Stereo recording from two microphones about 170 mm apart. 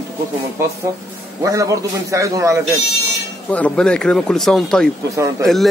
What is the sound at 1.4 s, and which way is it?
A man's voice, 20° right (ahead or behind).